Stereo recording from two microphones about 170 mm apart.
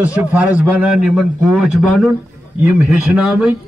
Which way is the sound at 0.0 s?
10° right (ahead or behind).